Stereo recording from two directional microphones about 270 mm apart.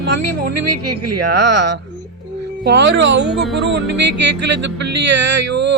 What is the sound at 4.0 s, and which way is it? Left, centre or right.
Music, right.